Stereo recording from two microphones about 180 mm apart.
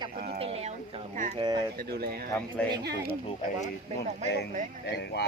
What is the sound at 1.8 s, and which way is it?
Speech, 60° right (ahead or behind).